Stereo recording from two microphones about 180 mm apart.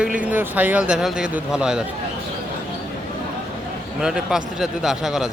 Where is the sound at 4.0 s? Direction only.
5° right (ahead or behind).